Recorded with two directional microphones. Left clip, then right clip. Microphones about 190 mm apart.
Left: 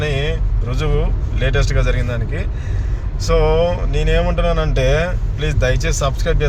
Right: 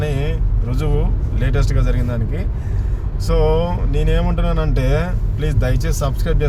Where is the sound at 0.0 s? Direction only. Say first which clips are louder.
Left 3 dB; centre (ahead or behind).